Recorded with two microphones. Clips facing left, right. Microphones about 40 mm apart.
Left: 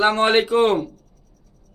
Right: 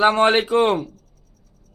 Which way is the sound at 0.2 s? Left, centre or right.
Centre.